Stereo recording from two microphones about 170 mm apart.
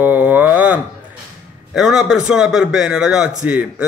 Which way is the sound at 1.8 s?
5° right (ahead or behind).